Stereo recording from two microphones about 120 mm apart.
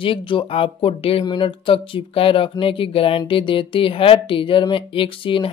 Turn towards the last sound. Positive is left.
turn(degrees=45)  # may be behind; listen again after turning